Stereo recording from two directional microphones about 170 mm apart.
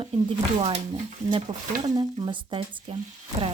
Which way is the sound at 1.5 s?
25° right (ahead or behind).